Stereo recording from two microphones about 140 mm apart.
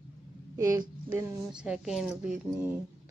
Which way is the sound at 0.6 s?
25° right (ahead or behind).